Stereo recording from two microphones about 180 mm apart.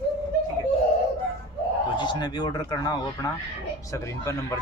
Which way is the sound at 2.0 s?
25° left (ahead or behind).